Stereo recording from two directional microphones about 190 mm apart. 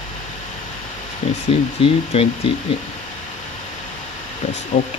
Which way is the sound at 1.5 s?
30° left (ahead or behind).